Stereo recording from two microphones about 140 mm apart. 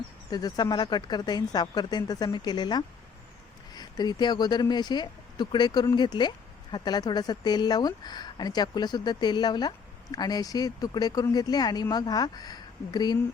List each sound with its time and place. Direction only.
0.3 s speech: 30° left (ahead or behind)